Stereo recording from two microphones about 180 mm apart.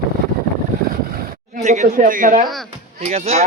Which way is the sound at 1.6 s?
40° right (ahead or behind).